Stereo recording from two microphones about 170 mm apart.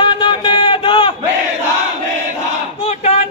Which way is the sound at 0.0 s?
30° left (ahead or behind).